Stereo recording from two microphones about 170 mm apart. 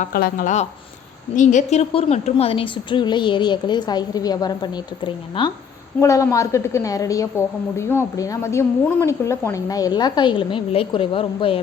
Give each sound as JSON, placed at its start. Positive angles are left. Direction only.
{"t": 0.0, "sound": "a woman's voice", "side_deg": 60}
{"t": 6.0, "sound": "a woman's voice", "side_deg": 20}